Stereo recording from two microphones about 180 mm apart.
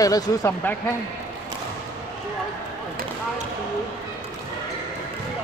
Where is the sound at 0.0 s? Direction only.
20° left (ahead or behind).